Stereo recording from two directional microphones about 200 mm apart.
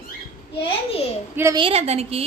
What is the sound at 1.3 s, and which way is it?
Speech, 15° right (ahead or behind).